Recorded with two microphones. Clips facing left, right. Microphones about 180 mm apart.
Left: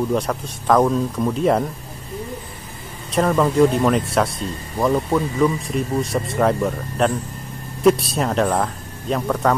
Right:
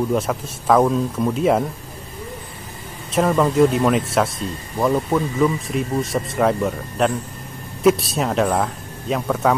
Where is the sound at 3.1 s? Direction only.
Centre (ahead or behind).